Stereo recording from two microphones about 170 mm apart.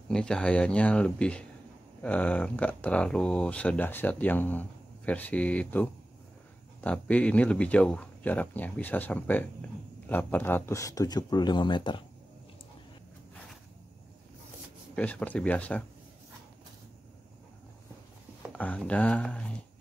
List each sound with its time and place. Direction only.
0.1 s speech: 5° left (ahead or behind); by 12.0 s 30° left (ahead or behind)
15.0 s speech: 10° left (ahead or behind)
18.5 s speech: 5° left (ahead or behind)